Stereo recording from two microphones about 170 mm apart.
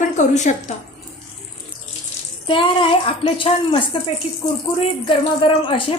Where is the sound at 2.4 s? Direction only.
30° left (ahead or behind).